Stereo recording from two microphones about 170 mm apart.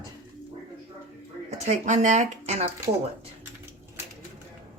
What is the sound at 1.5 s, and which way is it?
A woman's voice, 40° right (ahead or behind).